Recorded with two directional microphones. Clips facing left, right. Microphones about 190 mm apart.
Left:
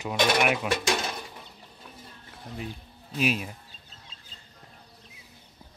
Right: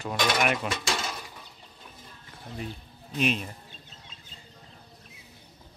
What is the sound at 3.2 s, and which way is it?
Speech, 5° left (ahead or behind).